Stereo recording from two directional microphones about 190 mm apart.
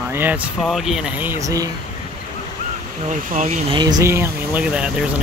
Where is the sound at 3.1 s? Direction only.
45° right (ahead or behind); by 5.0 s 5° right (ahead or behind).